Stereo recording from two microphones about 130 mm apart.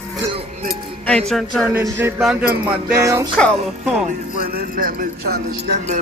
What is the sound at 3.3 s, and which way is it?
Speech, centre (ahead or behind).